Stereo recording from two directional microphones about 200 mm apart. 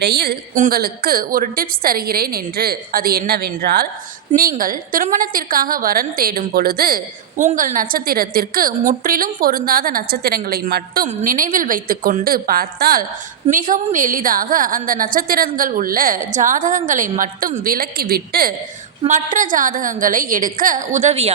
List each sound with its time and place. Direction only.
0.0 s a woman's voice: 55° right (ahead or behind)
19.0 s a woman's voice: 40° right (ahead or behind)